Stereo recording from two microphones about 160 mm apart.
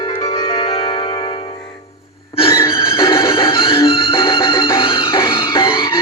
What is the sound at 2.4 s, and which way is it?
Music, 35° left (ahead or behind).